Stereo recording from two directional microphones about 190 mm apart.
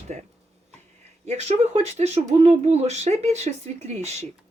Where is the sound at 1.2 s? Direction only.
35° right (ahead or behind).